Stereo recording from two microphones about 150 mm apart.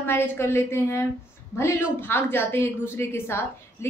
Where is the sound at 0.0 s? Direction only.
15° left (ahead or behind).